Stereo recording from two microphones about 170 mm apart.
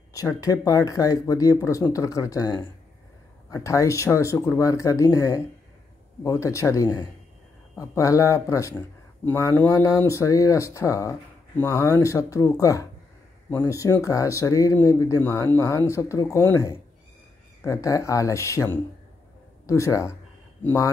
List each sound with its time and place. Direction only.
0.1 s speech: 20° left (ahead or behind)